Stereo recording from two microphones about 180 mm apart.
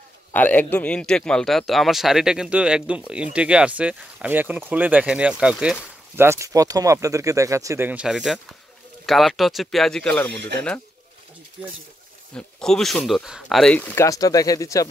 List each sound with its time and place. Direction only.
0.3 s a man's voice: 10° left (ahead or behind)
12.4 s a man's voice: 5° left (ahead or behind)